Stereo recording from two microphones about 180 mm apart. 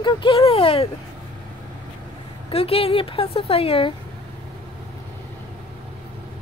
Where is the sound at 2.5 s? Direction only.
35° left (ahead or behind).